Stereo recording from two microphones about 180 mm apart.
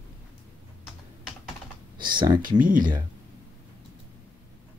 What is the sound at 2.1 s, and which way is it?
Speech, 25° right (ahead or behind).